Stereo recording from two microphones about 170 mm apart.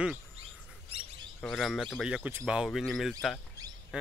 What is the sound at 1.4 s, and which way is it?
Speech, centre (ahead or behind).